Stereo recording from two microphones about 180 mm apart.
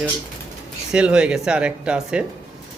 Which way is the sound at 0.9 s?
5° right (ahead or behind).